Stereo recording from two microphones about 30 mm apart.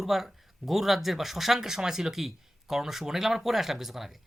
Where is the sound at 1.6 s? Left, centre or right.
Centre.